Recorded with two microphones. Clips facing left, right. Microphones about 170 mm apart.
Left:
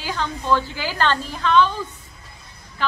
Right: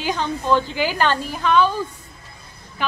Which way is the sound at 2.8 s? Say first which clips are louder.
Even; 15° right (ahead or behind).